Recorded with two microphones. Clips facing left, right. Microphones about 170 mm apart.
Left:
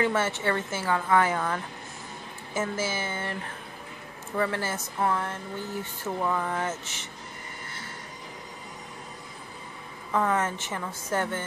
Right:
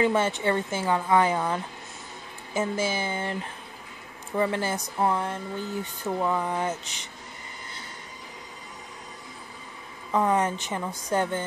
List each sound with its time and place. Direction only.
0.0 s a woman's voice: 15° right (ahead or behind)
4.4 s a woman's voice: 20° right (ahead or behind)
10.1 s a woman's voice: 15° right (ahead or behind)